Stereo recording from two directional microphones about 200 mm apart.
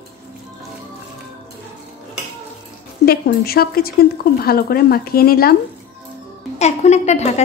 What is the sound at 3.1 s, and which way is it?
Speech, 50° left (ahead or behind).